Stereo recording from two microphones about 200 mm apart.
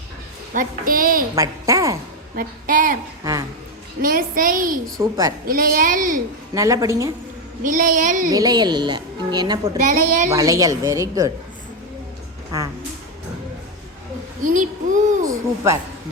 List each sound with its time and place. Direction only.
0.5 s a child's voice: 45° right (ahead or behind)
1.4 s a woman's voice: 15° right (ahead or behind)
2.3 s a child's voice: 45° right (ahead or behind)
4.0 s a child's voice: 45° right (ahead or behind)
4.9 s a woman's voice: 15° right (ahead or behind)
5.5 s a child's voice: 45° right (ahead or behind)
6.5 s a woman's voice: 15° right (ahead or behind)
7.6 s a woman's voice: 40° right (ahead or behind)
8.3 s a woman's voice: 20° right (ahead or behind)
9.8 s a woman's voice: 40° right (ahead or behind)
10.2 s a woman's voice: 15° right (ahead or behind)
14.4 s a sound: 40° right (ahead or behind)
15.3 s speech: 15° right (ahead or behind)